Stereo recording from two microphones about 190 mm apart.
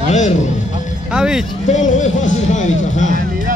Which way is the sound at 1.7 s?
40° left (ahead or behind).